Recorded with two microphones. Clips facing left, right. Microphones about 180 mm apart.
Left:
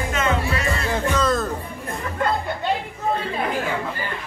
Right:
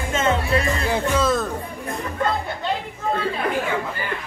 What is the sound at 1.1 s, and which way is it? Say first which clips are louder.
Speech: right 1 dB; 5° right (ahead or behind).